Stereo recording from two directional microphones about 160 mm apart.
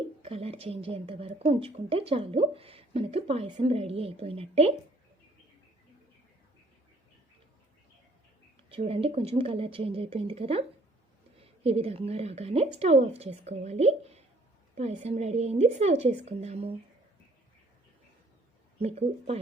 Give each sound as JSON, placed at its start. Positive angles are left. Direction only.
{"t": 0.2, "sound": "a woman's voice", "side_deg": -40}
{"t": 8.9, "sound": "a woman's voice", "side_deg": -35}
{"t": 11.6, "sound": "a woman's voice", "side_deg": -40}
{"t": 18.8, "sound": "a woman's voice", "side_deg": -40}